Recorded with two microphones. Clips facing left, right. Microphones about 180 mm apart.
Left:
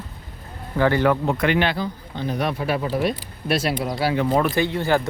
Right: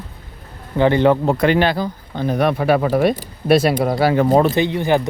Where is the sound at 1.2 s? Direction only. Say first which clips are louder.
Right 5 dB; 35° right (ahead or behind).